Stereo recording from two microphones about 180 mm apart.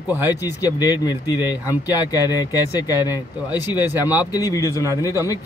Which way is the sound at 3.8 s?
10° right (ahead or behind).